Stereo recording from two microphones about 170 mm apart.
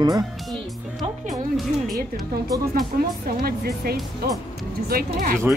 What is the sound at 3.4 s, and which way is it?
Speech, 65° right (ahead or behind).